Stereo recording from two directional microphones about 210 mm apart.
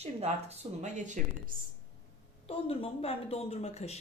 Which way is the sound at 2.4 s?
25° left (ahead or behind).